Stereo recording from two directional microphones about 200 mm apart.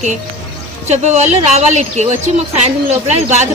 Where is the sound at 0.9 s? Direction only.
35° right (ahead or behind).